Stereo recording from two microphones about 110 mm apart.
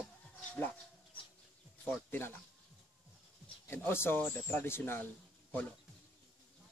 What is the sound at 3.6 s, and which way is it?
Speech, 20° left (ahead or behind).